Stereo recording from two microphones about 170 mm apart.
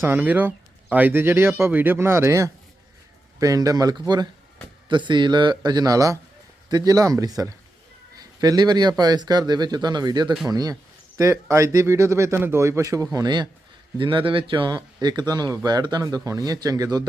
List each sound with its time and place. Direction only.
0.0 s speech: 10° right (ahead or behind)